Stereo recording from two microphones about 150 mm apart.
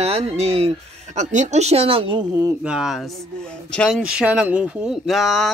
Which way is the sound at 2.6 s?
5° right (ahead or behind).